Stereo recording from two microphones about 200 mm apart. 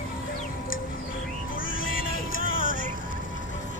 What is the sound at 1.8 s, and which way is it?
Music, 45° left (ahead or behind).